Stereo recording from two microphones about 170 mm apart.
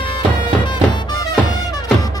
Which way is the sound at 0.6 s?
25° left (ahead or behind).